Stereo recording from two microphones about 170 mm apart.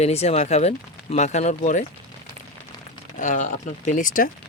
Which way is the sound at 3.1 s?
50° left (ahead or behind).